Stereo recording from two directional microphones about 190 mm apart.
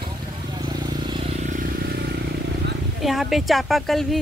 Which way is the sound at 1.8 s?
55° right (ahead or behind).